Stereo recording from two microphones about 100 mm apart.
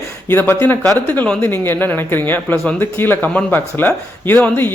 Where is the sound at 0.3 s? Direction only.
20° left (ahead or behind).